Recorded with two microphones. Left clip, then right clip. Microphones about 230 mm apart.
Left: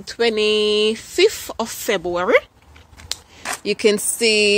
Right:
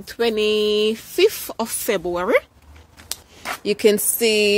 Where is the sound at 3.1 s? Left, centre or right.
Centre.